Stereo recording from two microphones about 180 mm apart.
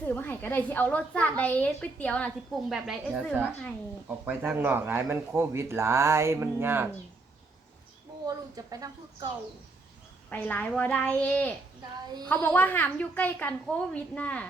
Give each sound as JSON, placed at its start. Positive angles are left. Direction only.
{"t": 0.0, "sound": "a woman's voice", "side_deg": 10}
{"t": 8.3, "sound": "speech", "side_deg": -20}
{"t": 10.2, "sound": "a woman's voice", "side_deg": 10}
{"t": 11.9, "sound": "speech", "side_deg": -25}
{"t": 12.3, "sound": "a woman's voice", "side_deg": 10}